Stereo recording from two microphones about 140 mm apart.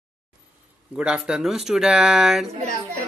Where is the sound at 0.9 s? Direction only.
5° right (ahead or behind).